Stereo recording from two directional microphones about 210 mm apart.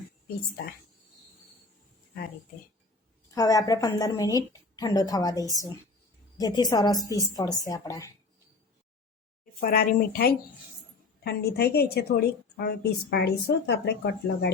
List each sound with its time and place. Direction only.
3.3 s a woman's voice: 15° left (ahead or behind)
9.6 s a woman's voice: 45° left (ahead or behind)